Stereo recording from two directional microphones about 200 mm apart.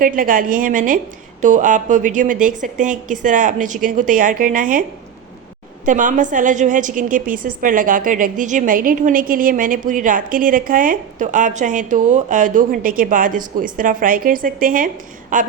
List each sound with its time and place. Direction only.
0.0 s a woman's voice: 45° right (ahead or behind)
5.8 s a woman's voice: 40° right (ahead or behind)